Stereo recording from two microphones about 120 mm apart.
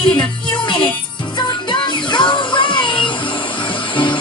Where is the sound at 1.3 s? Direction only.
40° left (ahead or behind).